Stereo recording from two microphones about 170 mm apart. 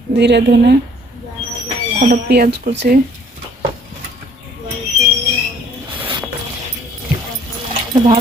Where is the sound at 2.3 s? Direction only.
70° right (ahead or behind).